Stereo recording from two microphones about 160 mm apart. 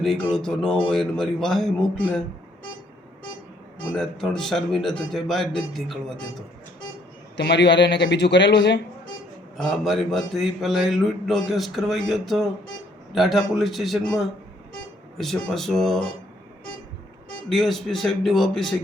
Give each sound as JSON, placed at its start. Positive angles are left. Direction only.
{"t": 0.0, "sound": "speech", "side_deg": 5}
{"t": 3.9, "sound": "speech", "side_deg": 5}
{"t": 7.3, "sound": "a man's voice", "side_deg": 90}
{"t": 9.6, "sound": "speech", "side_deg": 0}
{"t": 17.5, "sound": "speech", "side_deg": 0}